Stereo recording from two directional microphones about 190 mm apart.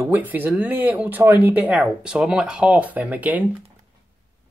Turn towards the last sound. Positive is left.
turn(degrees=-10)  # may be behind; listen again after turning